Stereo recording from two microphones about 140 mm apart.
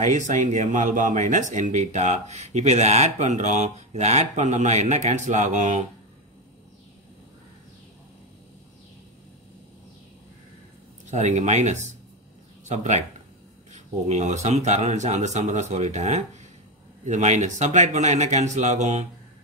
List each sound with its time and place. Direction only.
0.0 s speech: 60° right (ahead or behind)
11.1 s speech: 60° right (ahead or behind)